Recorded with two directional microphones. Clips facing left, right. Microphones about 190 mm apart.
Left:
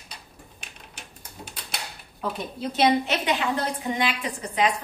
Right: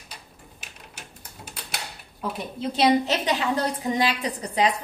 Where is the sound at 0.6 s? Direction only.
5° right (ahead or behind).